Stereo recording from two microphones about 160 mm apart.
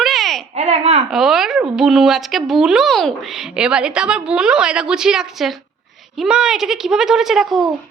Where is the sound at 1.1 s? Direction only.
5° right (ahead or behind).